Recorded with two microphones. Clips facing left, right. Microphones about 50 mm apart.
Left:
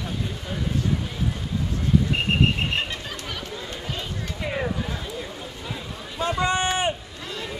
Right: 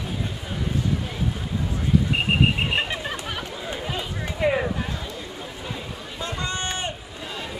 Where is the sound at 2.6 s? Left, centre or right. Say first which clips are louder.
Right 2 dB; centre.